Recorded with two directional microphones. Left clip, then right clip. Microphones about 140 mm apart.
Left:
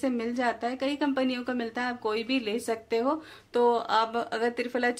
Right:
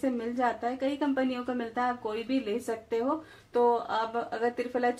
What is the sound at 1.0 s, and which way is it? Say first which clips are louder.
Speech: left 2 dB; 40° left (ahead or behind).